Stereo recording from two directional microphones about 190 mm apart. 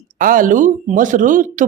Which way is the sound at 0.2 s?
45° right (ahead or behind).